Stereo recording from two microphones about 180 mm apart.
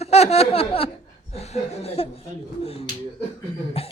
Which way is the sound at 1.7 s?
35° left (ahead or behind).